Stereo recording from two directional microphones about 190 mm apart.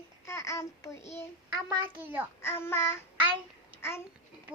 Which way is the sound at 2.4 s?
15° left (ahead or behind).